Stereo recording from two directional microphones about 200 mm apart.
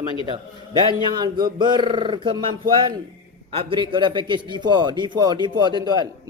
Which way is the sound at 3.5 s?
25° right (ahead or behind).